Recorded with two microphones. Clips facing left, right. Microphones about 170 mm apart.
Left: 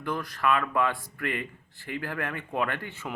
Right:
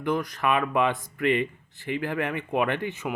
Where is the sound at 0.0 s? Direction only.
20° right (ahead or behind).